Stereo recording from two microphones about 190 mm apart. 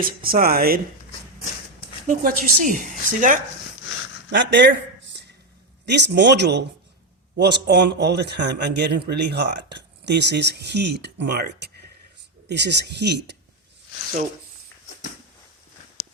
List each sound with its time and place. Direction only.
0.3 s speech: 50° right (ahead or behind)
2.0 s speech: 45° right (ahead or behind)
4.3 s speech: 70° right (ahead or behind)
5.8 s speech: 65° right (ahead or behind)